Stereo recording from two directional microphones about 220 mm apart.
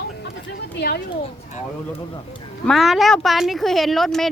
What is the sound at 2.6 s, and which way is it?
Speech, centre (ahead or behind).